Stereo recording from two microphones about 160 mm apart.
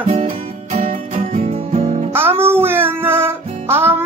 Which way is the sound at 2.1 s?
15° right (ahead or behind).